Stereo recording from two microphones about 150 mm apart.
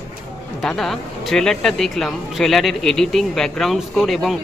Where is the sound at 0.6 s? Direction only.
Centre (ahead or behind).